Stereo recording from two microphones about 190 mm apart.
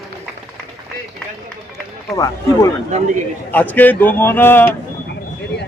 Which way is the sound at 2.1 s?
20° left (ahead or behind).